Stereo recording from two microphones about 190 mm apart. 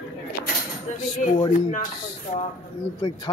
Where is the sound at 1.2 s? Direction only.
40° left (ahead or behind).